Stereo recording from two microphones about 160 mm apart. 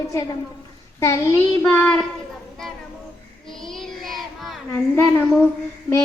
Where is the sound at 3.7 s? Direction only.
Centre (ahead or behind).